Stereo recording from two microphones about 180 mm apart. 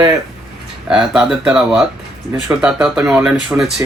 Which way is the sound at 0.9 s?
5° right (ahead or behind).